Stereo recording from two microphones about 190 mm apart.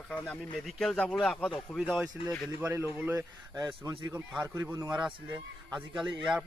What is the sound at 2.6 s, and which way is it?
A man's voice, 15° right (ahead or behind).